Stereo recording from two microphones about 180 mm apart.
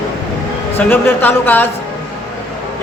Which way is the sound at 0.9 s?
10° left (ahead or behind).